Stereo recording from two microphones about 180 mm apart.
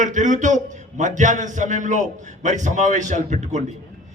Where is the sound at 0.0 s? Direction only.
45° right (ahead or behind).